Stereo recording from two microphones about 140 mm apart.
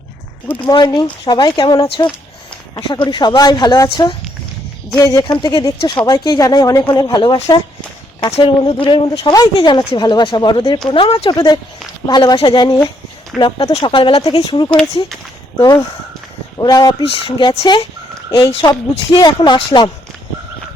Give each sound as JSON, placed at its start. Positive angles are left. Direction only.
{"t": 0.6, "sound": "speech", "side_deg": 30}
{"t": 4.9, "sound": "speech", "side_deg": 25}
{"t": 9.2, "sound": "speech", "side_deg": 30}
{"t": 13.3, "sound": "speech", "side_deg": -5}
{"t": 13.7, "sound": "speech", "side_deg": 40}
{"t": 17.0, "sound": "speech", "side_deg": 40}